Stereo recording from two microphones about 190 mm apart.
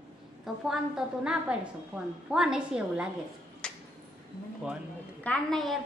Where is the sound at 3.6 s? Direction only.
5° left (ahead or behind).